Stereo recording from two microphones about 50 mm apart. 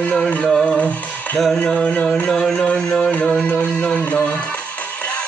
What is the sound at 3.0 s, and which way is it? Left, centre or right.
Music, left.